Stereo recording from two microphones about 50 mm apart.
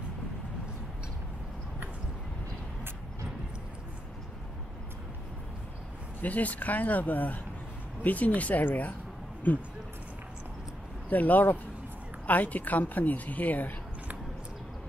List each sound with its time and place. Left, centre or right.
6.2 s a woman's voice: left
11.1 s a woman's voice: left